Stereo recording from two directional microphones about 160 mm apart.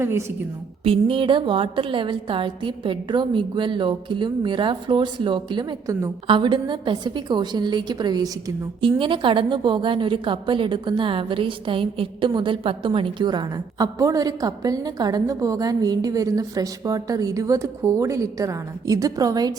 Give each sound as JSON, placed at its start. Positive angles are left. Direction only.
{"t": 0.0, "sound": "a woman's voice", "side_deg": -15}
{"t": 0.9, "sound": "a woman's voice", "side_deg": -35}